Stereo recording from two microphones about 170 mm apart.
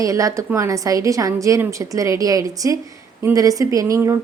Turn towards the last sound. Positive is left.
turn(degrees=-20)  # may be behind; listen again after turning